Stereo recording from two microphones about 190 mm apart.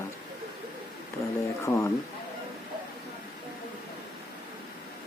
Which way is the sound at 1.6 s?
15° left (ahead or behind).